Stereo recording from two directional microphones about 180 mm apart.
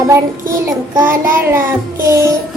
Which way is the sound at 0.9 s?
15° right (ahead or behind).